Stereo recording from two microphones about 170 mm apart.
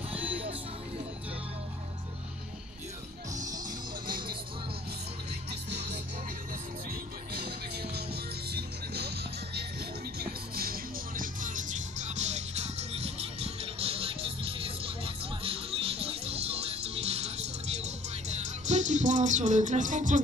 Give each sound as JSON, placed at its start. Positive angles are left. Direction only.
{"t": 0.1, "sound": "music", "side_deg": -10}
{"t": 3.3, "sound": "music", "side_deg": -20}
{"t": 7.3, "sound": "music", "side_deg": -70}
{"t": 10.1, "sound": "music", "side_deg": -60}
{"t": 18.7, "sound": "music", "side_deg": -45}